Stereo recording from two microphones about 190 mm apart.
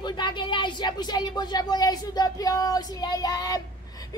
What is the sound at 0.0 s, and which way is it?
A woman's voice, 25° left (ahead or behind).